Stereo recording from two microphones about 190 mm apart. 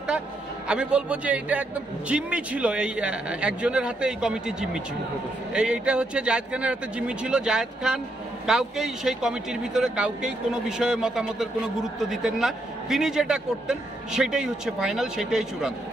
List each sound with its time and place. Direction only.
0.7 s speech: 5° right (ahead or behind)